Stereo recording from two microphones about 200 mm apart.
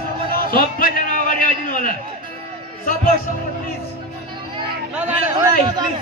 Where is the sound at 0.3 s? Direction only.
45° left (ahead or behind).